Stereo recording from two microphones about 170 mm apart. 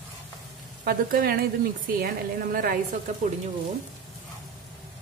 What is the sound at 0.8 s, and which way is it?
A woman's voice, 60° right (ahead or behind).